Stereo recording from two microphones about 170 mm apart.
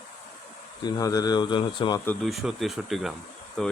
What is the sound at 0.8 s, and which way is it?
Speech, 20° left (ahead or behind).